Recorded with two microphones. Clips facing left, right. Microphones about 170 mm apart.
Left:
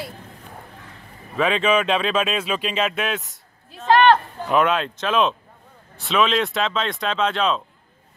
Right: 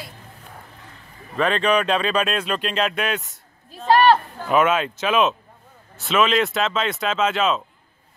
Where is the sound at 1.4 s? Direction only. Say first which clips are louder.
Even; centre (ahead or behind).